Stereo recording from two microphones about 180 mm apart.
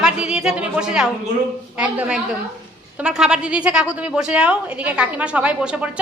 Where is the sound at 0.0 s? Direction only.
5° right (ahead or behind).